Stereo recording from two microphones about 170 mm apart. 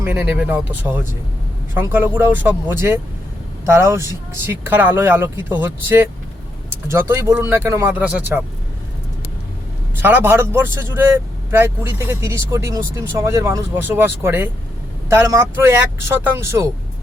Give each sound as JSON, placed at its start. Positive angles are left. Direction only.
{"t": 0.0, "sound": "speech", "side_deg": -10}
{"t": 10.0, "sound": "speech", "side_deg": -10}